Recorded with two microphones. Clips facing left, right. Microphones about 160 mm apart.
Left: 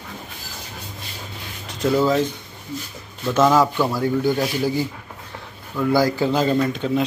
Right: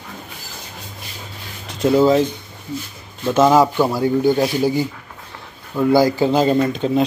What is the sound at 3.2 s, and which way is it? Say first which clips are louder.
Speech: right 3 dB; 20° right (ahead or behind).